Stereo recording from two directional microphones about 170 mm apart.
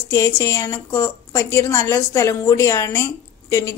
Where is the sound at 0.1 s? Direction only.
20° left (ahead or behind).